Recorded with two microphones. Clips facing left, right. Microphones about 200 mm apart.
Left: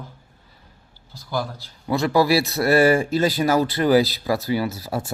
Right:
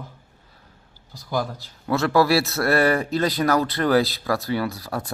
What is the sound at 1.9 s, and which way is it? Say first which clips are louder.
Speech: even; centre (ahead or behind).